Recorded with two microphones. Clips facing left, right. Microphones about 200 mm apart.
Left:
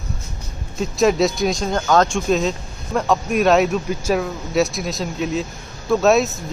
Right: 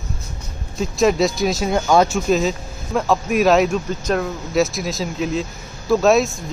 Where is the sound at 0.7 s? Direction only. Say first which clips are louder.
Even; centre (ahead or behind).